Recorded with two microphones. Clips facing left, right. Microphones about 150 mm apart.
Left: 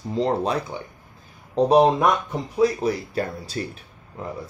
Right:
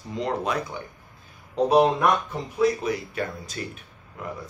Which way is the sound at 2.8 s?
35° left (ahead or behind).